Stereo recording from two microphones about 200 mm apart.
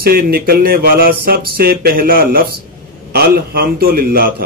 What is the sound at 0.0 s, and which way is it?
Speech, 50° right (ahead or behind).